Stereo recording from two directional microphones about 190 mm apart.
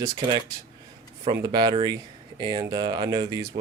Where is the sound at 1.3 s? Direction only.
20° right (ahead or behind).